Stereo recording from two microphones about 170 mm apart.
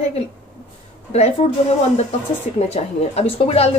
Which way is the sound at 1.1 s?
40° left (ahead or behind).